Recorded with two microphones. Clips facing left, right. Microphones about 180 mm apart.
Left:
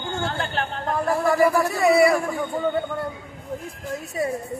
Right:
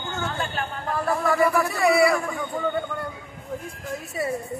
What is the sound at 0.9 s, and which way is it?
Speech, 30° left (ahead or behind).